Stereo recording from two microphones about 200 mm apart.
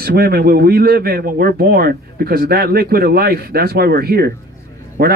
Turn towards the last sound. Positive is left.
turn(degrees=-50)  # may be behind; listen again after turning